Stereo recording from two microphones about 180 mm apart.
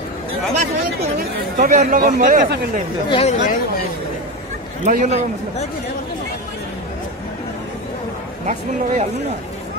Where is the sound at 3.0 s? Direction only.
30° left (ahead or behind).